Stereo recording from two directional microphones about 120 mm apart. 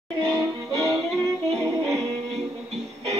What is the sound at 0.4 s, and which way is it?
Music, 25° right (ahead or behind).